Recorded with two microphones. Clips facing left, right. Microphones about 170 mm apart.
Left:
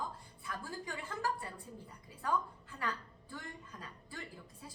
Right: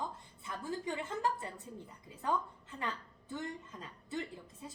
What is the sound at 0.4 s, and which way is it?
A woman's voice, 25° right (ahead or behind).